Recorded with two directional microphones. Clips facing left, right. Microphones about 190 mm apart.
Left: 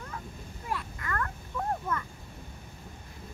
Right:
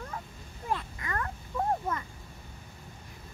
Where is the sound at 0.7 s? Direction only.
20° right (ahead or behind).